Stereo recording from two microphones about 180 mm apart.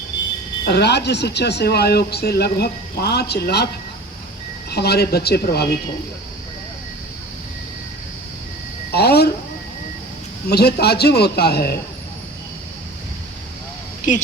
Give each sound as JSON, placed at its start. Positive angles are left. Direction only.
{"t": 0.6, "sound": "speech", "side_deg": 65}
{"t": 4.7, "sound": "speech", "side_deg": 65}
{"t": 8.9, "sound": "speech", "side_deg": 65}
{"t": 10.5, "sound": "speech", "side_deg": 65}
{"t": 14.1, "sound": "a woman's voice", "side_deg": 45}